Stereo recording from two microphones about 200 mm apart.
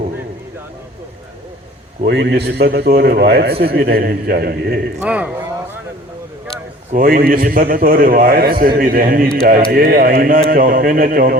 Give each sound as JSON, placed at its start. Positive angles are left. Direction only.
{"t": 2.0, "sound": "a man's voice", "side_deg": -55}
{"t": 5.0, "sound": "a sound", "side_deg": -5}
{"t": 6.9, "sound": "a man's voice", "side_deg": -45}